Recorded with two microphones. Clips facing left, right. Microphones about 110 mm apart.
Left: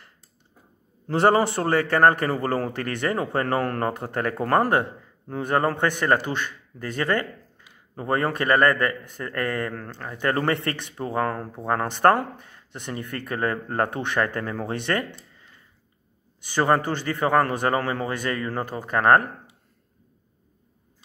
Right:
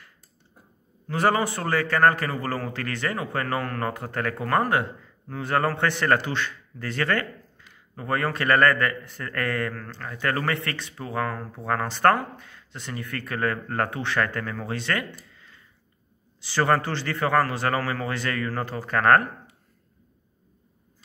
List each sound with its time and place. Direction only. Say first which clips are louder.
1.2 s speech: left 4 dB; 25° left (ahead or behind)
5.3 s speech: left 2 dB; 20° left (ahead or behind)
7.9 s speech: left 2 dB; 30° left (ahead or behind)
16.5 s speech: left 1 dB; 15° left (ahead or behind)